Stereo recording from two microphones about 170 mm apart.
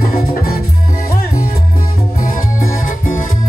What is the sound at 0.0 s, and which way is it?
Music, 60° left (ahead or behind).